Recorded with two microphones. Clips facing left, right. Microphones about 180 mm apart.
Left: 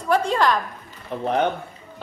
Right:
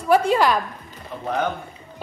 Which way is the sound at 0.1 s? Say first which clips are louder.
Right 2 dB; 10° right (ahead or behind).